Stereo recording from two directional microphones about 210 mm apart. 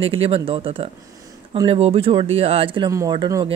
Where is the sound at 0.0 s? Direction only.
25° right (ahead or behind).